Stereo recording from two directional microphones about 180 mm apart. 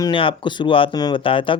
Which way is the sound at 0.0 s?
30° left (ahead or behind).